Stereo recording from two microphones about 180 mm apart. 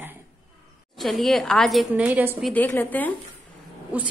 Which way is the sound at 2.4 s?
5° left (ahead or behind).